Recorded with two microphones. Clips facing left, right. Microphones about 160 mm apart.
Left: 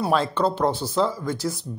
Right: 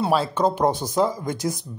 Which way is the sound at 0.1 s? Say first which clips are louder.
Right 1 dB; 10° right (ahead or behind).